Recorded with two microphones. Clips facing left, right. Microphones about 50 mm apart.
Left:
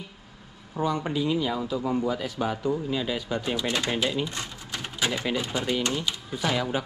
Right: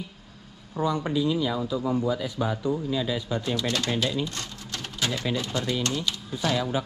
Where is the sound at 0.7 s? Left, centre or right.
Left.